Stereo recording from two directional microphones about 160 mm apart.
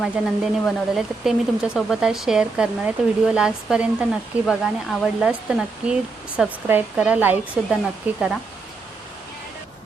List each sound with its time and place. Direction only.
0.0 s speech: centre (ahead or behind)